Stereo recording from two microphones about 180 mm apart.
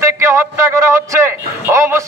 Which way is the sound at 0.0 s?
15° right (ahead or behind).